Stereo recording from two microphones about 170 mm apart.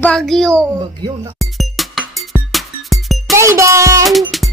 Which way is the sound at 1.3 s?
Centre (ahead or behind).